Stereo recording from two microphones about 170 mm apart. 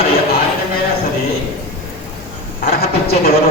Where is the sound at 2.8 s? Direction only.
65° left (ahead or behind).